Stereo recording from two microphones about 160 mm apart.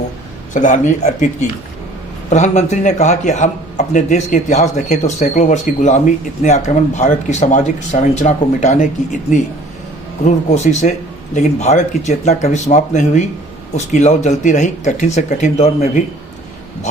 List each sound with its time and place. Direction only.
0.5 s speech: 50° left (ahead or behind)
10.2 s speech: 45° left (ahead or behind)